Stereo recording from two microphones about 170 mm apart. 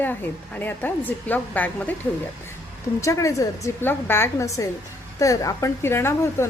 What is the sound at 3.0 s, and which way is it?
A woman's voice, 20° left (ahead or behind).